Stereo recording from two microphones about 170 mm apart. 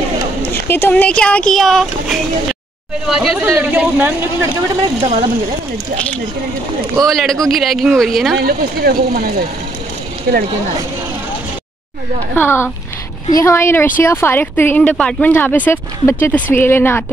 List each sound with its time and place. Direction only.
0.5 s speech: 15° left (ahead or behind); by 4.1 s 10° right (ahead or behind)
4.8 s speech: 35° right (ahead or behind)
7.0 s speech: centre (ahead or behind)
8.4 s speech: 60° right (ahead or behind)
12.4 s speech: 15° left (ahead or behind)